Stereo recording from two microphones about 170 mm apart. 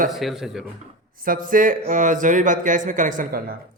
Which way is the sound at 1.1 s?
55° right (ahead or behind).